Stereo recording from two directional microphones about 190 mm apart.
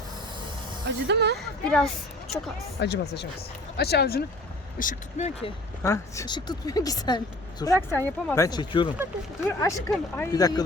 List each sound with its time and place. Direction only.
0.9 s speech: 65° right (ahead or behind)
1.4 s a woman's voice: centre (ahead or behind)
2.3 s speech: 60° left (ahead or behind)
4.8 s speech: 40° left (ahead or behind)
5.8 s speech: 15° left (ahead or behind)